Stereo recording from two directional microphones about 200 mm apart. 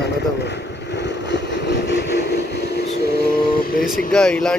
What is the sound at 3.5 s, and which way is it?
Speech, 45° left (ahead or behind).